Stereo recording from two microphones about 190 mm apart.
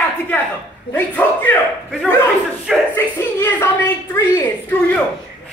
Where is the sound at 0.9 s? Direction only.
10° left (ahead or behind).